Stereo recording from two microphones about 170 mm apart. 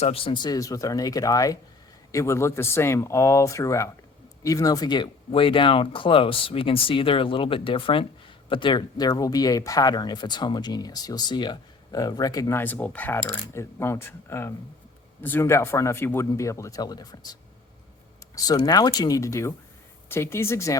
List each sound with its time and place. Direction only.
0.0 s speech: 35° left (ahead or behind)
18.3 s speech: 20° left (ahead or behind)